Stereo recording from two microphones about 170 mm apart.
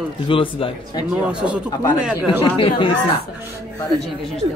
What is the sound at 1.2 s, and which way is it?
Speech, 5° right (ahead or behind).